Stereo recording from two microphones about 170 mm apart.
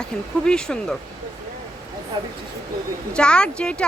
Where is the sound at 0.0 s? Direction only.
5° left (ahead or behind).